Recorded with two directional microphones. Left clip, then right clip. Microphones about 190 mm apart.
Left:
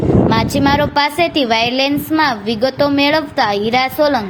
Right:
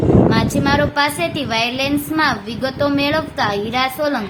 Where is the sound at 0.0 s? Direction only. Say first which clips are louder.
Even; centre (ahead or behind).